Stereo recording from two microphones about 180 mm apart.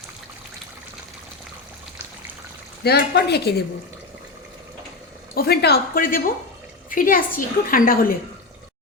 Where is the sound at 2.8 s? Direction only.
65° left (ahead or behind).